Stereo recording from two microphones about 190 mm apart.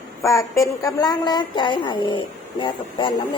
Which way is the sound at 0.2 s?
15° left (ahead or behind).